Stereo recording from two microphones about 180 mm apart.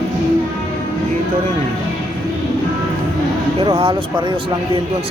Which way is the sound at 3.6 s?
30° right (ahead or behind).